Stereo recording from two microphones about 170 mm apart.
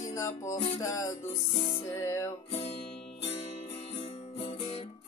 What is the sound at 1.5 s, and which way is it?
Speech, 30° left (ahead or behind).